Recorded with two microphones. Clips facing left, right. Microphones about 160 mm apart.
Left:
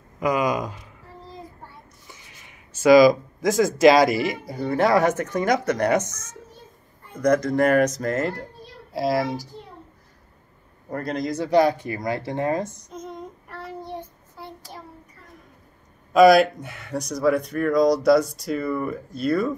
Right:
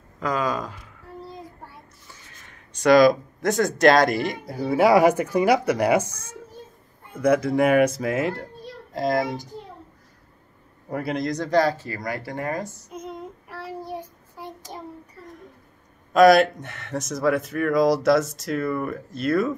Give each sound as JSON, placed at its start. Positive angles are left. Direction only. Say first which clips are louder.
{"t": 0.2, "sound": "a sound", "louder": "left 3 dB", "side_deg": 15}
{"t": 2.0, "sound": "speech", "louder": "left 1 dB", "side_deg": 15}
{"t": 6.0, "sound": "a child's voice", "louder": "even", "side_deg": -30}
{"t": 7.2, "sound": "speech", "louder": "even", "side_deg": -5}
{"t": 10.9, "sound": "speech", "louder": "right 1 dB", "side_deg": -5}
{"t": 12.9, "sound": "child singing", "louder": "right 1 dB", "side_deg": -10}
{"t": 16.1, "sound": "speech", "louder": "left 1 dB", "side_deg": 0}